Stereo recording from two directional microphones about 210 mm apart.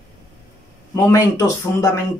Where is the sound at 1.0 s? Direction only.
15° left (ahead or behind).